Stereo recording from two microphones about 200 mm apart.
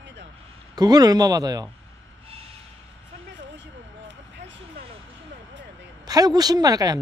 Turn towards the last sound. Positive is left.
turn(degrees=-20)  # may be behind; listen again after turning